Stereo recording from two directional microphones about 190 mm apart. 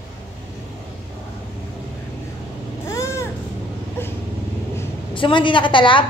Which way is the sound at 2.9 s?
15° left (ahead or behind).